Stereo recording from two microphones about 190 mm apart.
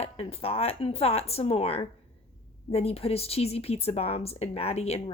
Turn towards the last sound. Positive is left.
turn(degrees=35)  # may be behind; listen again after turning